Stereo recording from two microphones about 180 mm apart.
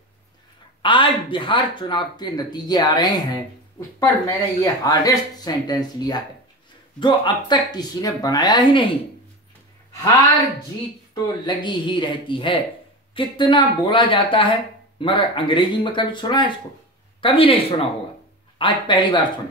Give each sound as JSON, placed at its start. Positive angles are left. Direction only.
{"t": 0.8, "sound": "speech", "side_deg": 25}
{"t": 11.4, "sound": "speech", "side_deg": 25}